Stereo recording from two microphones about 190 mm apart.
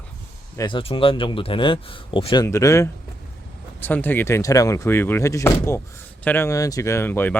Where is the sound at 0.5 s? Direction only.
25° left (ahead or behind).